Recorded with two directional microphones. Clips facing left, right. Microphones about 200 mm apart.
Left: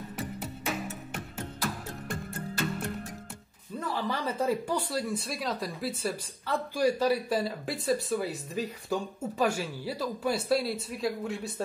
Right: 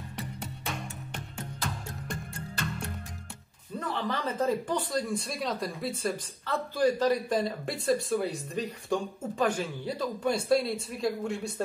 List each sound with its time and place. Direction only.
0.4 s music: 5° left (ahead or behind)
3.8 s speech: 10° left (ahead or behind)